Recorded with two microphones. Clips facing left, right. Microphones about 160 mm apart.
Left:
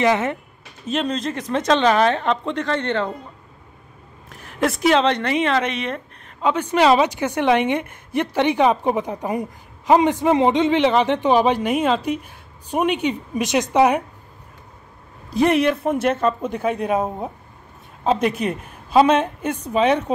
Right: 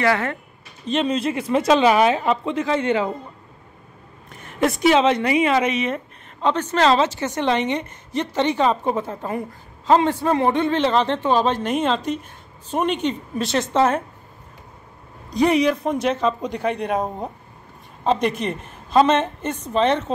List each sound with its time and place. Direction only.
0.0 s speech: 20° left (ahead or behind)
0.8 s speech: 5° right (ahead or behind)
4.3 s a woman's voice: centre (ahead or behind)
15.2 s a woman's voice: centre (ahead or behind)